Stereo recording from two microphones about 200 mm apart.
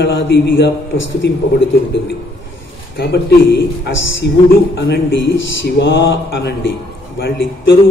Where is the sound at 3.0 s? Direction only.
55° left (ahead or behind).